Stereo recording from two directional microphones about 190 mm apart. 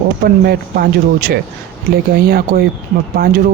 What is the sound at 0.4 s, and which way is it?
Speech, 55° right (ahead or behind).